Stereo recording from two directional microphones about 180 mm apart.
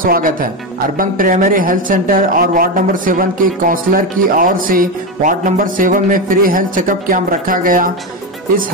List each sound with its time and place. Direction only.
0.0 s speech: 50° right (ahead or behind)